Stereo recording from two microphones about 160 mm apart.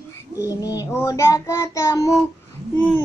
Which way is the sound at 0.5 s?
20° left (ahead or behind).